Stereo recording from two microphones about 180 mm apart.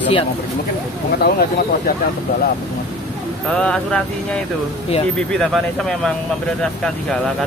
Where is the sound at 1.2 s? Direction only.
55° left (ahead or behind).